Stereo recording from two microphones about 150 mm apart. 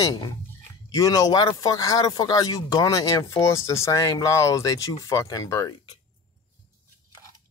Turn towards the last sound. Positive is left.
turn(degrees=25)  # may be behind; listen again after turning